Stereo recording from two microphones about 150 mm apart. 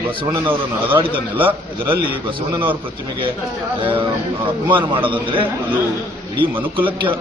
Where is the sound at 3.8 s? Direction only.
35° right (ahead or behind).